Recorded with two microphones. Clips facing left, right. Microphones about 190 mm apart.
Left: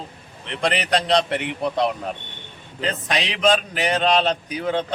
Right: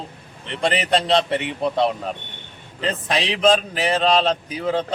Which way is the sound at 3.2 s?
35° right (ahead or behind).